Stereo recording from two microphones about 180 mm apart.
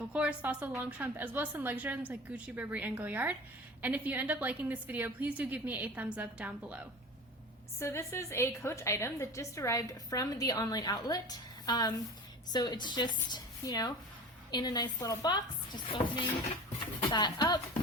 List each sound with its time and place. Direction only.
0.1 s a woman's voice: 5° right (ahead or behind)
7.8 s a woman's voice: 15° left (ahead or behind)